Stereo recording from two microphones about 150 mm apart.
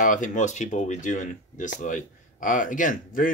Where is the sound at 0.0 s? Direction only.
60° left (ahead or behind).